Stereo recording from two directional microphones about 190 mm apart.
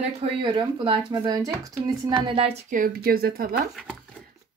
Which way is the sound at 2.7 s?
50° right (ahead or behind).